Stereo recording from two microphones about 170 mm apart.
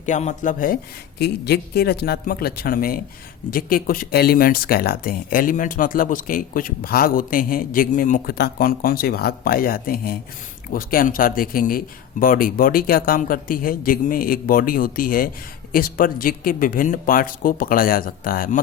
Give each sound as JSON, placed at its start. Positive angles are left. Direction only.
{"t": 0.0, "sound": "speech", "side_deg": 45}
{"t": 1.2, "sound": "speech", "side_deg": 70}